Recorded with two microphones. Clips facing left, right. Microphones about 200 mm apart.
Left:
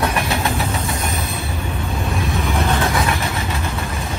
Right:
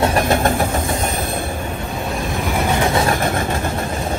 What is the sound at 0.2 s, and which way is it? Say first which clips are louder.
Vehicle: right 5 dB; 50° right (ahead or behind).